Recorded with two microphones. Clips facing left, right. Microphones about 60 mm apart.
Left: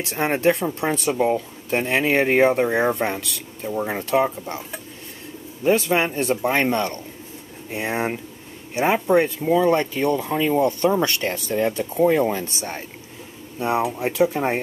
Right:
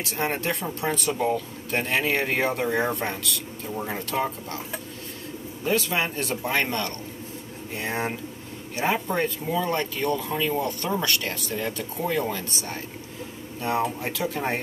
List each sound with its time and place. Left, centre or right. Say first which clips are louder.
0.0 s speech: left 7 dB; left
5.6 s speech: left 6 dB; left